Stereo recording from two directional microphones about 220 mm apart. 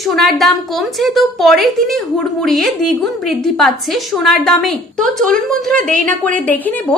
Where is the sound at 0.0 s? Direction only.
Centre (ahead or behind).